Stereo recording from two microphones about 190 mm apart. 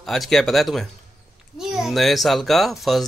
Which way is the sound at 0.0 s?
Centre (ahead or behind).